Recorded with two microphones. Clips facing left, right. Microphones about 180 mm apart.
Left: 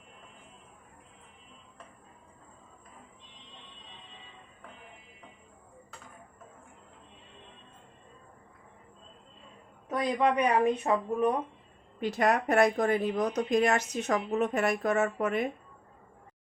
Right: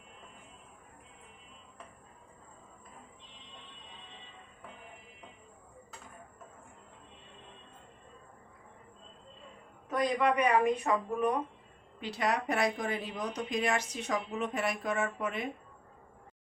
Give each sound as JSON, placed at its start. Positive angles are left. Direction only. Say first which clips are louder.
{"t": 10.2, "sound": "speech", "louder": "left 3 dB", "side_deg": 30}
{"t": 11.9, "sound": "speech", "louder": "left 5 dB", "side_deg": 50}